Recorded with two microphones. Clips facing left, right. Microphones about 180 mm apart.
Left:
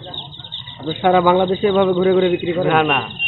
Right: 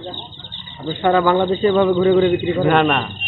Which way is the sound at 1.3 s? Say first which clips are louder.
Left 1 dB; centre (ahead or behind).